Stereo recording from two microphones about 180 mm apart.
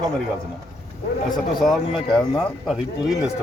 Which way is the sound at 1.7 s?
Centre (ahead or behind).